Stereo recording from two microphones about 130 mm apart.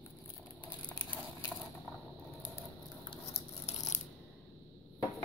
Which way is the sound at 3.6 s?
60° left (ahead or behind).